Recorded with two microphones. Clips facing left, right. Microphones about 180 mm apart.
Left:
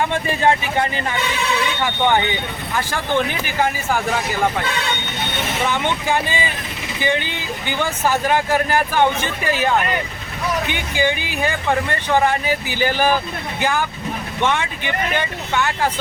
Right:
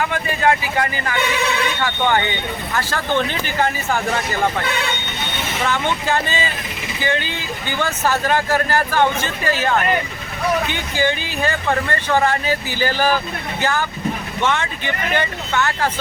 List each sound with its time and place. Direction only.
0.0 s speech: 25° left (ahead or behind); by 4.0 s 10° left (ahead or behind)
5.6 s speech: 15° left (ahead or behind)